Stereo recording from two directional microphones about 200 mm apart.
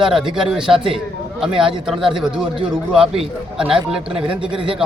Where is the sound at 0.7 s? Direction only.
25° right (ahead or behind).